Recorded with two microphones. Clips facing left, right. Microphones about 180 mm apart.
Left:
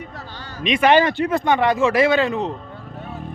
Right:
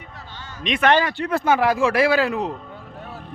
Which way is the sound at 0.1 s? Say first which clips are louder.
Left 4 dB; 40° left (ahead or behind).